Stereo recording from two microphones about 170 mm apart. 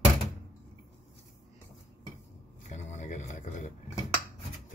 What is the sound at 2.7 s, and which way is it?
Speech, 45° left (ahead or behind).